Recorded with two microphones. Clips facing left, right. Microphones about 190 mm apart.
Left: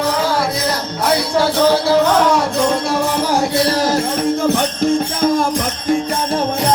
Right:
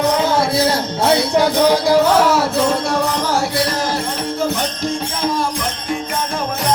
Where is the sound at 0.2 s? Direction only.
25° right (ahead or behind); by 3.0 s 5° right (ahead or behind).